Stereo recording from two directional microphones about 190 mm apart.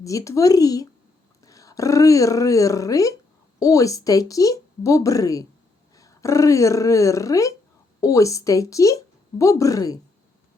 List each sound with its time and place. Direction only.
0.0 s speech: 15° left (ahead or behind)